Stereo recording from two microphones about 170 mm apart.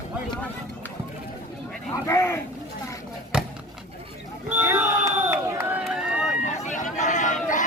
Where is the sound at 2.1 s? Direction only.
15° left (ahead or behind).